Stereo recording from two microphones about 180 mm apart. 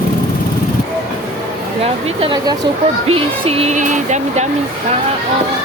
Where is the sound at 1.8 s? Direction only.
35° right (ahead or behind).